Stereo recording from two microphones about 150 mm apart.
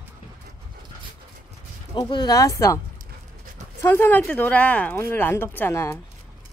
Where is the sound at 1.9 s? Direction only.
30° left (ahead or behind).